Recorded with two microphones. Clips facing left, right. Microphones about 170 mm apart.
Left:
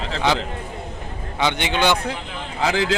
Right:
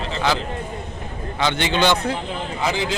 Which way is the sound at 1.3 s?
15° left (ahead or behind).